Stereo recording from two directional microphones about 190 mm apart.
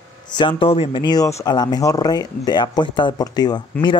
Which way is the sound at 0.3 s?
25° left (ahead or behind).